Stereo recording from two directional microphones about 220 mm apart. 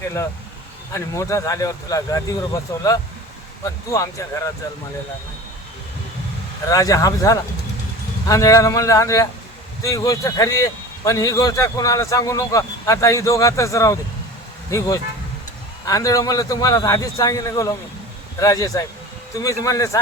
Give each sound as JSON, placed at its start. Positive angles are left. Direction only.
{"t": 0.9, "sound": "a man's voice", "side_deg": 15}
{"t": 6.7, "sound": "a man's voice", "side_deg": 15}